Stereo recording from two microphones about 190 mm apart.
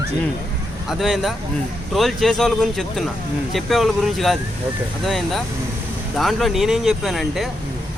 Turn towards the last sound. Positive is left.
turn(degrees=0)  # may be behind; listen again after turning